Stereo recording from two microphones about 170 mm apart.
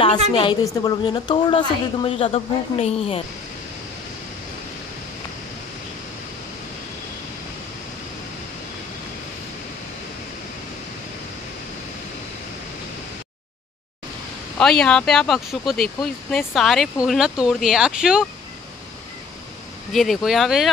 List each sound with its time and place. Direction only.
0.3 s a woman's voice: 30° left (ahead or behind)
14.6 s speech: 5° left (ahead or behind)
19.9 s speech: centre (ahead or behind)